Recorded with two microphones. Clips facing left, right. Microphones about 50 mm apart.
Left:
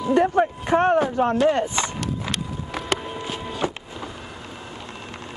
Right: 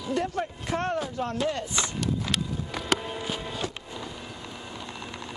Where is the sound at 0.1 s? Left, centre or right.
Left.